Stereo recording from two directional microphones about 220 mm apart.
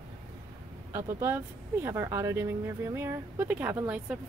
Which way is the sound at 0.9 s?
10° right (ahead or behind).